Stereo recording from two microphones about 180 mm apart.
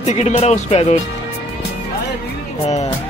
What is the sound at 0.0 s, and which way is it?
Speech, 40° left (ahead or behind).